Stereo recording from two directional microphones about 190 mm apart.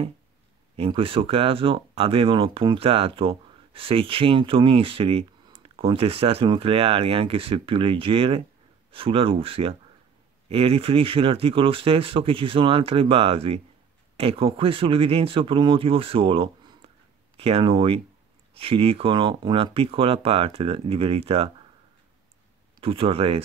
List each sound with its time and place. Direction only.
0.7 s speech: 30° right (ahead or behind)
22.8 s speech: 30° right (ahead or behind)